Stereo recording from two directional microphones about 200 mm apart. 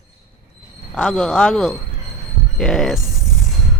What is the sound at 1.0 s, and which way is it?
Speech, centre (ahead or behind).